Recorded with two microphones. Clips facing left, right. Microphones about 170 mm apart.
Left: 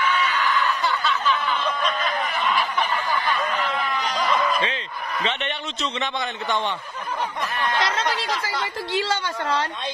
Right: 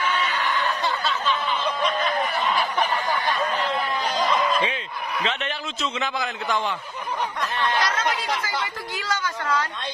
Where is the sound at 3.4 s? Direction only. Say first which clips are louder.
Even; 30° right (ahead or behind).